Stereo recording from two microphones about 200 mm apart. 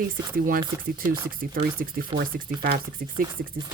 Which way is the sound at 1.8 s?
45° right (ahead or behind).